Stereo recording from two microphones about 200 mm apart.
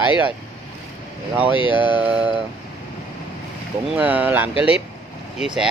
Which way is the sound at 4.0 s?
10° right (ahead or behind).